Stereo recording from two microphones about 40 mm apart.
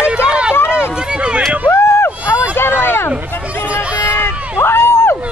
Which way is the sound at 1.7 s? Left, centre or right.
Left.